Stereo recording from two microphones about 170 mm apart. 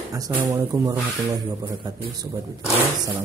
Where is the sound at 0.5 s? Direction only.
15° right (ahead or behind).